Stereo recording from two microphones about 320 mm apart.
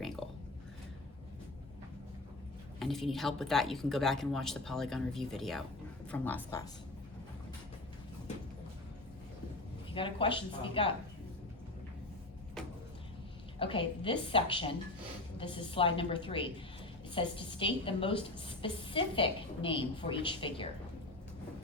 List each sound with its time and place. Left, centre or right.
2.7 s speech: centre
9.9 s a woman's voice: centre
13.6 s a woman's voice: centre